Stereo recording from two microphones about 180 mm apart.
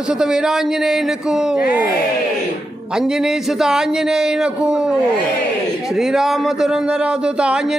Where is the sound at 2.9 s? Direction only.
Centre (ahead or behind).